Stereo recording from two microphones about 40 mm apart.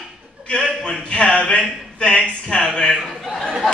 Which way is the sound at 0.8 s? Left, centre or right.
Left.